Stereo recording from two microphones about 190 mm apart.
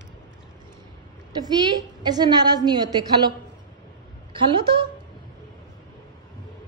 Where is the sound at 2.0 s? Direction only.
20° right (ahead or behind).